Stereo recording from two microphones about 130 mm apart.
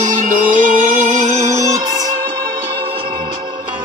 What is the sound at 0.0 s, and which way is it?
Music, 80° right.